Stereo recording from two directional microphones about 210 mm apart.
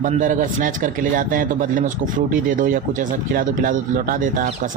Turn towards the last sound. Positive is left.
turn(degrees=-40)  # may be behind; listen again after turning